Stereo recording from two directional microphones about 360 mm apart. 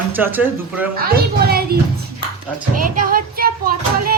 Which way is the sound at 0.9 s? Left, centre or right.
Right.